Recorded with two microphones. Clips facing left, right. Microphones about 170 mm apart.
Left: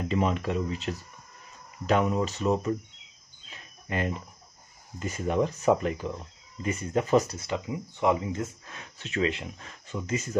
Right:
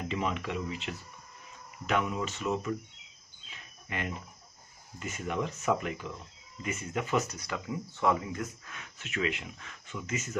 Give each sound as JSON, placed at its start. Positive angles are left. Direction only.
{"t": 0.1, "sound": "speech", "side_deg": 40}
{"t": 3.4, "sound": "a sound", "side_deg": 35}
{"t": 4.9, "sound": "speech", "side_deg": 35}